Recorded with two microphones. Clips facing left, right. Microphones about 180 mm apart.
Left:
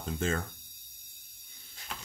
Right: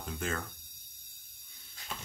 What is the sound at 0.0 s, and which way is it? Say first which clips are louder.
Speech: left 4 dB; 25° left (ahead or behind).